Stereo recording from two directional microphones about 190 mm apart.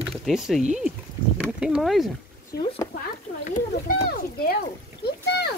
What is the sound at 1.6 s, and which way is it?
Speech, centre (ahead or behind).